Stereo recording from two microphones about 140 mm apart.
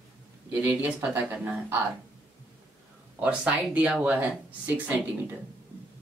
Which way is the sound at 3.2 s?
10° right (ahead or behind).